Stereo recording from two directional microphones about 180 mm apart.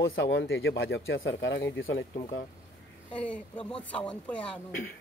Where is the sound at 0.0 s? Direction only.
90° left.